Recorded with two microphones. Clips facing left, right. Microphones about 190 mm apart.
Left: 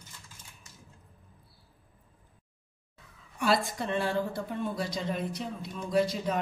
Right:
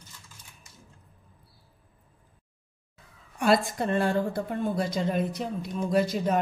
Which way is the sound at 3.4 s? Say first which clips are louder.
Right 4 dB; 50° right (ahead or behind).